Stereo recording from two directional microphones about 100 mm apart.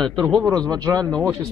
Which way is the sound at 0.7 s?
40° right (ahead or behind).